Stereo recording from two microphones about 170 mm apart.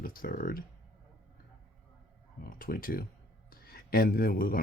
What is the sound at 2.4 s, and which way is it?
Speech, 60° left (ahead or behind).